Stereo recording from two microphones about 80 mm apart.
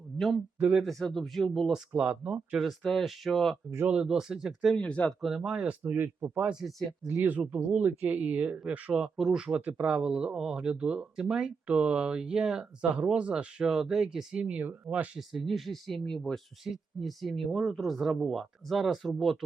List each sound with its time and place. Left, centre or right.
0.8 s speech: centre
2.0 s speech: centre
2.8 s speech: centre
3.8 s speech: centre
4.6 s speech: centre
5.2 s speech: centre
5.8 s speech: right
6.6 s speech: centre
7.3 s speech: right
9.1 s speech: centre
9.6 s speech: right
9.8 s speech: centre
15.3 s speech: centre